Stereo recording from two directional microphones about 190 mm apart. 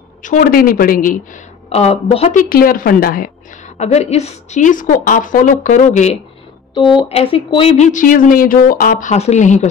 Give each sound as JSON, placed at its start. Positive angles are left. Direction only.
{"t": 0.2, "sound": "a woman's voice", "side_deg": 45}
{"t": 2.3, "sound": "a woman's voice", "side_deg": 50}
{"t": 6.7, "sound": "speech", "side_deg": 25}